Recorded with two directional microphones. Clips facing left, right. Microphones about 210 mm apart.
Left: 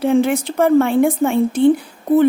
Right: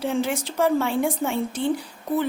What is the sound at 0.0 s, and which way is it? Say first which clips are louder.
A woman's voice: left 9 dB; 55° left (ahead or behind).